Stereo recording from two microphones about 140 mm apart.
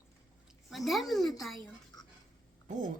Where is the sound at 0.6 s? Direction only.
Centre (ahead or behind).